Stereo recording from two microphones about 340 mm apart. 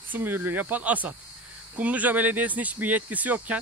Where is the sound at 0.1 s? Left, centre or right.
Centre.